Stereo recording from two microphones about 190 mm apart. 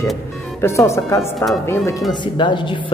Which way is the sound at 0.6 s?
15° left (ahead or behind).